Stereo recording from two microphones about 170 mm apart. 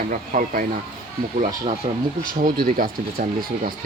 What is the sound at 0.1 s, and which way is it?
Speech, 50° right (ahead or behind).